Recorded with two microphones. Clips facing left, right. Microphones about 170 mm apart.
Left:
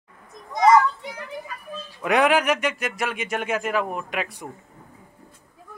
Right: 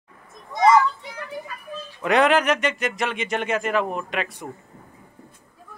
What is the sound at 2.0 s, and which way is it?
Speech, 10° left (ahead or behind).